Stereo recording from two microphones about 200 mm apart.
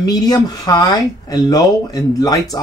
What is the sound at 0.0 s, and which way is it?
Speech, 20° left (ahead or behind).